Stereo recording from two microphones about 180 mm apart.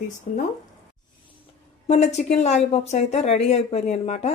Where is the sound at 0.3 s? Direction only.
40° left (ahead or behind).